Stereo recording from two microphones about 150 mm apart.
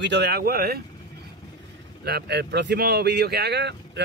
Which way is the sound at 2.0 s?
90° right.